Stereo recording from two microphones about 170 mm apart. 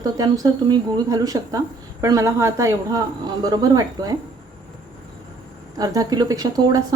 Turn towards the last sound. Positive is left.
turn(degrees=-20)  # may be behind; listen again after turning